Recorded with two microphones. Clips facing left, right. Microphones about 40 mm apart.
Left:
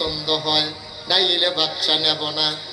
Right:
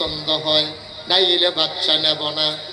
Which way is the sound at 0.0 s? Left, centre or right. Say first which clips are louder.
Even; right.